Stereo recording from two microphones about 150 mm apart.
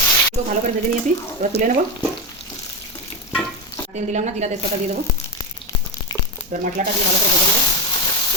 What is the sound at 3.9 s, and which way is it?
Speech, 50° right (ahead or behind).